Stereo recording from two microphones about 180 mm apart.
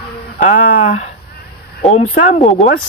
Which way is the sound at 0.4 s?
45° left (ahead or behind).